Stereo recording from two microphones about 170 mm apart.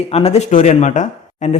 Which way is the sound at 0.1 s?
40° left (ahead or behind).